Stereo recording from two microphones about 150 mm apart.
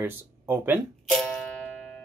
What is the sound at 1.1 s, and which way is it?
Doorbell, 5° left (ahead or behind).